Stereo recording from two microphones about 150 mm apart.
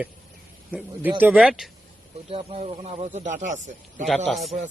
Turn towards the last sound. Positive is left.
turn(degrees=0)  # may be behind; listen again after turning